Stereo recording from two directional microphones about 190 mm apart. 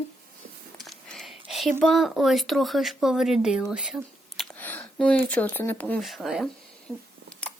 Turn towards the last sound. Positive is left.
turn(degrees=0)  # may be behind; listen again after turning